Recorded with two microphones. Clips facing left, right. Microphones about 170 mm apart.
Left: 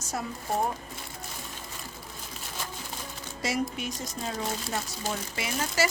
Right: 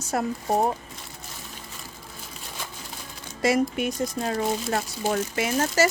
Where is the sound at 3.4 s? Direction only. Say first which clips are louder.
Right 8 dB; 55° right (ahead or behind).